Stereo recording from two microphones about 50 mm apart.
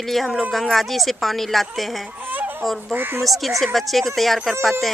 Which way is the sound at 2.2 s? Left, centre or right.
Right.